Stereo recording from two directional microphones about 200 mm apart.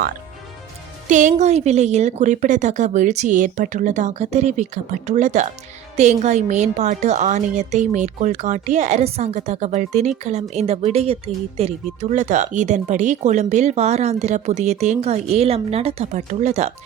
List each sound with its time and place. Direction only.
1.0 s speech: 40° right (ahead or behind)